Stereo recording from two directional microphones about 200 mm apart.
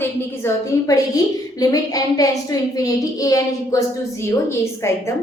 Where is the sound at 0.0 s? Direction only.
15° left (ahead or behind).